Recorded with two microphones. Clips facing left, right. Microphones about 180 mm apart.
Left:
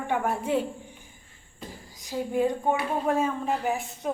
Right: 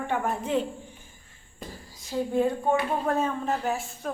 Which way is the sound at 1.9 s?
15° left (ahead or behind).